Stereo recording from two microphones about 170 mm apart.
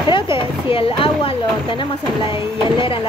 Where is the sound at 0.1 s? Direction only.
30° left (ahead or behind).